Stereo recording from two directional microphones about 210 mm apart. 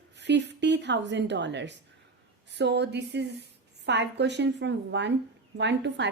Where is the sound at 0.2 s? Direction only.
55° right (ahead or behind).